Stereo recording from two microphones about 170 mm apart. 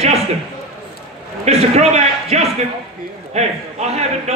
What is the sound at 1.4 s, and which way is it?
A man's voice, 40° right (ahead or behind).